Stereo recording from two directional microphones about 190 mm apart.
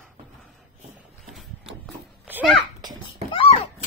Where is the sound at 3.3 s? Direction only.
30° left (ahead or behind).